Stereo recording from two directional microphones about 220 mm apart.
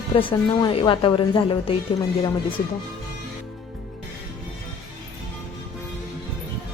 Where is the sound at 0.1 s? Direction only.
25° left (ahead or behind).